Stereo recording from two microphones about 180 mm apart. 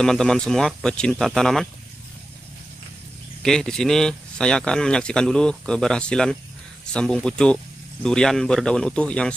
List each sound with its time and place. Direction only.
0.0 s speech: 5° left (ahead or behind)
3.4 s speech: 5° left (ahead or behind)